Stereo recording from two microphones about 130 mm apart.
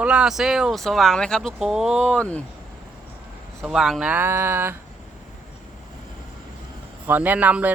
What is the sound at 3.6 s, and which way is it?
Speech, centre (ahead or behind).